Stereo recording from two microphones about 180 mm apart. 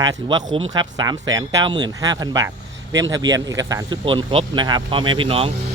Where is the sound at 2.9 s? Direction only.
90° right.